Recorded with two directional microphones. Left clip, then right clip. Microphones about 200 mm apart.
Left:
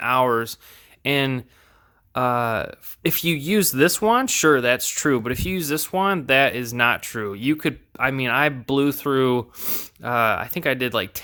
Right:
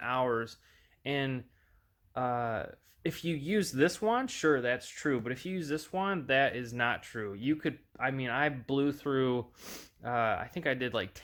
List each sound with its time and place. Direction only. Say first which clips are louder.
0.0 s speech: left 12 dB; 30° left (ahead or behind)